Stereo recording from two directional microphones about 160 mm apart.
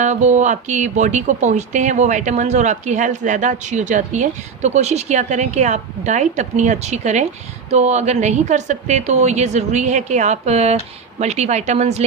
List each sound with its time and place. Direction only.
0.0 s speech: 45° right (ahead or behind)